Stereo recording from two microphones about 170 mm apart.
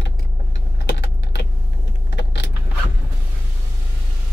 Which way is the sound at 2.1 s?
90° left.